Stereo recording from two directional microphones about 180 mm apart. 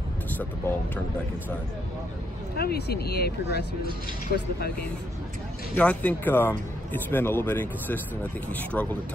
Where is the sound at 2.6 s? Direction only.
60° left (ahead or behind).